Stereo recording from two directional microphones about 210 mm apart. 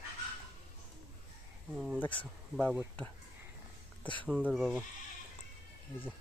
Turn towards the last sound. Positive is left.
turn(degrees=0)  # may be behind; listen again after turning